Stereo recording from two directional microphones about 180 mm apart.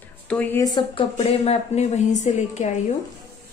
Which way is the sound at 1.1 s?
35° left (ahead or behind).